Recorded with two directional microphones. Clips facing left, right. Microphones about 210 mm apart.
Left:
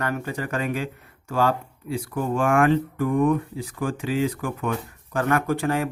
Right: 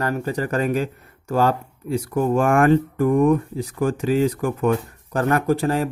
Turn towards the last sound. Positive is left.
turn(degrees=-35)  # may be behind; listen again after turning